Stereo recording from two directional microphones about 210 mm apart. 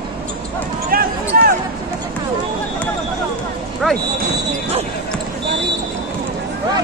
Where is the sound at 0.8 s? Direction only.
45° right (ahead or behind).